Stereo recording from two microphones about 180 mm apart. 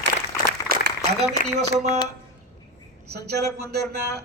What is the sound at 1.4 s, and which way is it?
Speech, 45° right (ahead or behind).